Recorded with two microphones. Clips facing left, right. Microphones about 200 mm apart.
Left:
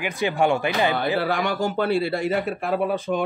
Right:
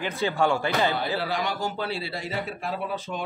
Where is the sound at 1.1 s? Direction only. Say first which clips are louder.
Left 5 dB; 55° left (ahead or behind).